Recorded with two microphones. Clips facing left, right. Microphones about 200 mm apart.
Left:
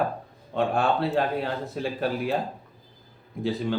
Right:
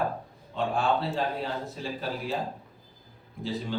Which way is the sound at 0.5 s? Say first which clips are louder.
Left 3 dB; 60° left (ahead or behind).